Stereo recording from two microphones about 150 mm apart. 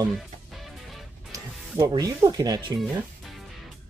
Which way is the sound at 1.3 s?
25° right (ahead or behind).